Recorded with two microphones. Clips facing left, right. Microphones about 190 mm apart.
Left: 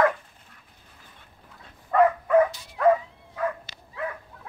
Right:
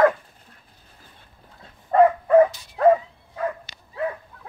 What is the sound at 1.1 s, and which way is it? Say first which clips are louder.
Dog: right 1 dB; 30° right (ahead or behind).